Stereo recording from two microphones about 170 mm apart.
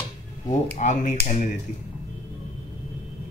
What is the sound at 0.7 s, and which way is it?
Speech, 45° left (ahead or behind).